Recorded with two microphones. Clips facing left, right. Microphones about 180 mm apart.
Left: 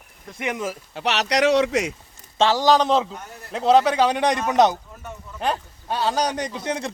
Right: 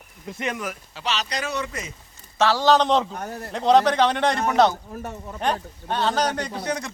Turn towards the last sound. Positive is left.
turn(degrees=25)  # may be behind; listen again after turning